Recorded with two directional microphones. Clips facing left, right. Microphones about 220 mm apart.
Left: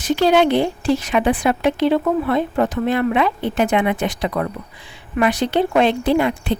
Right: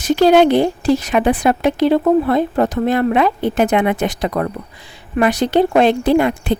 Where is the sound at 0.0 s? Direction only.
45° right (ahead or behind).